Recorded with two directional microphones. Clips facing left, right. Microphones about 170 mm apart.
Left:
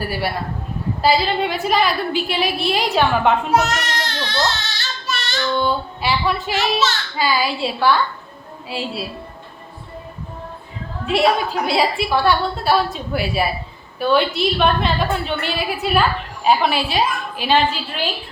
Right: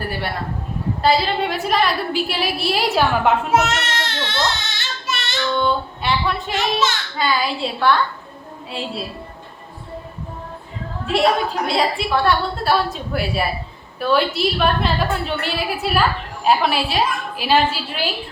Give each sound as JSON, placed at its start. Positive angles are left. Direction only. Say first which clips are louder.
{"t": 0.0, "sound": "a woman's voice", "louder": "left 2 dB", "side_deg": 10}
{"t": 3.5, "sound": "a child's voice", "louder": "even", "side_deg": -25}
{"t": 4.4, "sound": "child singing", "louder": "left 1 dB", "side_deg": -20}
{"t": 5.5, "sound": "a woman's voice", "louder": "right 1 dB", "side_deg": 5}
{"t": 11.0, "sound": "a woman's voice", "louder": "left 1 dB", "side_deg": 0}